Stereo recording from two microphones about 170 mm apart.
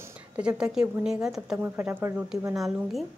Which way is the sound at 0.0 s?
5° right (ahead or behind).